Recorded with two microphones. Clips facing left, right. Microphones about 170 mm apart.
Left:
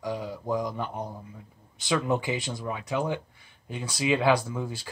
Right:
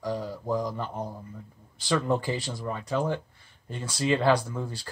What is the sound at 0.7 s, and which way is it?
Speech, 15° left (ahead or behind).